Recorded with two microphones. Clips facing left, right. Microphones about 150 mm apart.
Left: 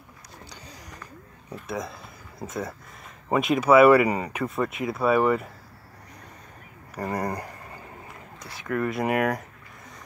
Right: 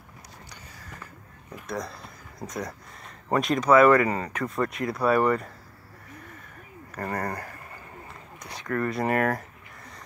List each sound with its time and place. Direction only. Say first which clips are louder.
0.7 s a sound: left 2 dB; 15° left (ahead or behind)
1.7 s speech: left 1 dB; centre (ahead or behind)
7.0 s speech: left 2 dB; 10° left (ahead or behind)